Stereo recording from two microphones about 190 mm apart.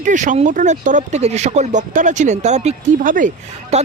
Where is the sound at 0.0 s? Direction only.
40° right (ahead or behind).